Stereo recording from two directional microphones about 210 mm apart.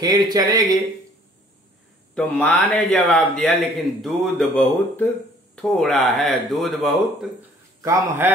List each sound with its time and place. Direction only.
0.0 s speech: 20° right (ahead or behind)
2.1 s speech: 5° left (ahead or behind)
7.8 s a man's voice: 15° right (ahead or behind)